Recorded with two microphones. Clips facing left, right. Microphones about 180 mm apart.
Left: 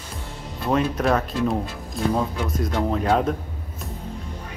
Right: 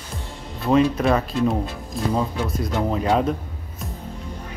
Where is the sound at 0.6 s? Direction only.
Centre (ahead or behind).